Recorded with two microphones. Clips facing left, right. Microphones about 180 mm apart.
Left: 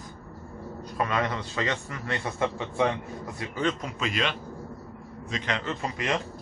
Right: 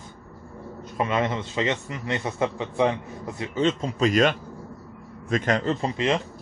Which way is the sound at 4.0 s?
45° right (ahead or behind).